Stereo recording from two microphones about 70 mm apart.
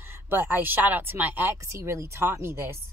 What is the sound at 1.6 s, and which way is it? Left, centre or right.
Speech, right.